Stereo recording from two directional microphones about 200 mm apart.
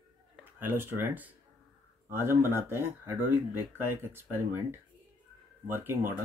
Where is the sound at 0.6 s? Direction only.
10° right (ahead or behind).